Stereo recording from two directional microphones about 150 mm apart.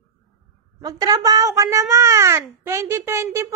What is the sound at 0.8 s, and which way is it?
A child's voice, 25° right (ahead or behind).